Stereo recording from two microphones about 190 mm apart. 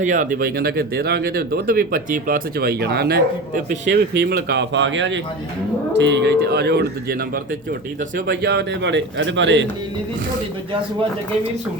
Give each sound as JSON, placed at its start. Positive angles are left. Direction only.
{"t": 0.0, "sound": "a man's voice", "side_deg": -40}